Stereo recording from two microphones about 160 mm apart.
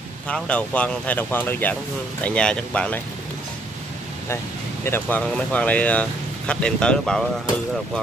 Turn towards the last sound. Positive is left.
turn(degrees=5)  # may be behind; listen again after turning